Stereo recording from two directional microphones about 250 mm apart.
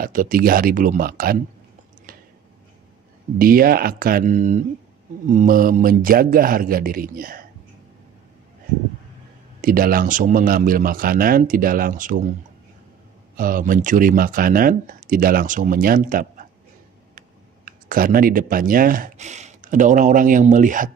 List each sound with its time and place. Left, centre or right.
0.0 s speech: right
2.1 s a sound: right
3.3 s speech: right
9.6 s speech: right
13.4 s speech: right
17.6 s speech: right